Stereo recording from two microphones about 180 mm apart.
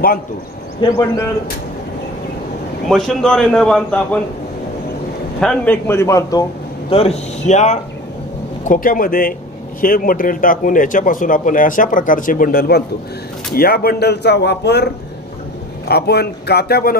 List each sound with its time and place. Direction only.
0.7 s a man's voice: 20° left (ahead or behind)
2.9 s a man's voice: 5° left (ahead or behind)
5.4 s a man's voice: 5° left (ahead or behind)
6.9 s a man's voice: 35° left (ahead or behind); by 14.9 s 70° left (ahead or behind)
15.9 s speech: 65° left (ahead or behind)